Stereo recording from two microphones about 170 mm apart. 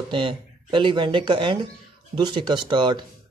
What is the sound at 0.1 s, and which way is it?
Speech, 30° right (ahead or behind).